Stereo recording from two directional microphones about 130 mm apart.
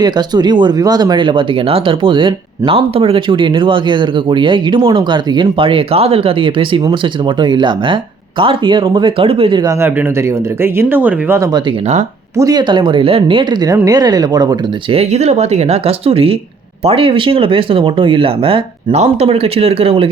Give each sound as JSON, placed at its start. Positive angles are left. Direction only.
{"t": 0.0, "sound": "speech", "side_deg": -30}
{"t": 9.6, "sound": "speech", "side_deg": -20}
{"t": 12.4, "sound": "speech", "side_deg": -30}
{"t": 14.9, "sound": "speech", "side_deg": -55}